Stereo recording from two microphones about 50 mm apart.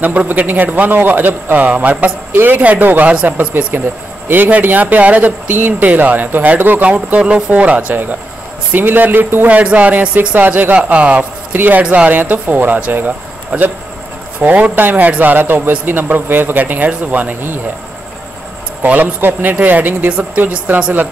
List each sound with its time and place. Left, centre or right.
0.0 s a man's voice: right
9.5 s music: right
10.1 s speech: right
11.5 s speech: right
18.9 s speech: right
20.1 s music: right